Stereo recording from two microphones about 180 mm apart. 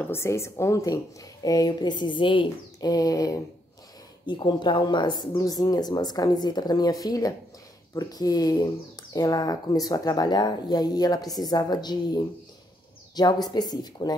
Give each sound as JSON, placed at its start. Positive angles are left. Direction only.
{"t": 0.0, "sound": "a woman's voice", "side_deg": 15}